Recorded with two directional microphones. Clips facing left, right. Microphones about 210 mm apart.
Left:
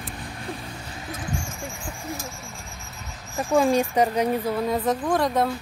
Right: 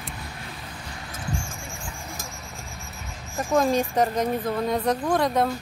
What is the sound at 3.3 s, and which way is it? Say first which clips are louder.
Speech: left 2 dB; 10° left (ahead or behind).